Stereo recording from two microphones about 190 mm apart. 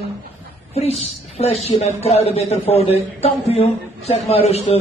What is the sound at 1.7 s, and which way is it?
A man's voice, 35° left (ahead or behind).